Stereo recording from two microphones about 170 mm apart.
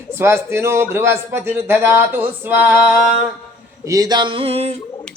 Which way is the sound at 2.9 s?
5° right (ahead or behind).